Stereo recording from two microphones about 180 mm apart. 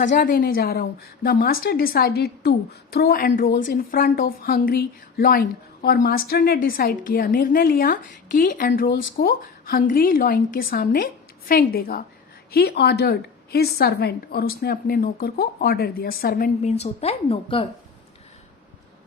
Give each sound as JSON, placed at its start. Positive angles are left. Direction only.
{"t": 0.0, "sound": "a woman's voice", "side_deg": 45}
{"t": 16.6, "sound": "a woman's voice", "side_deg": 35}